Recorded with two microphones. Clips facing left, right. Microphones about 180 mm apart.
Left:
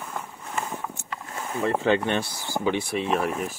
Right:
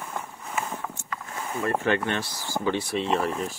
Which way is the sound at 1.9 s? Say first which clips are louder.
Left 3 dB; 20° left (ahead or behind).